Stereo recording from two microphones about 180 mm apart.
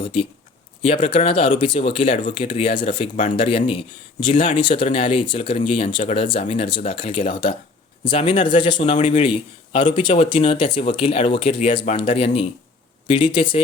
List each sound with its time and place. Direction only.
0.0 s speech: 30° left (ahead or behind)